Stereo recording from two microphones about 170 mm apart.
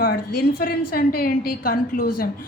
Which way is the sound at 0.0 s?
65° left (ahead or behind).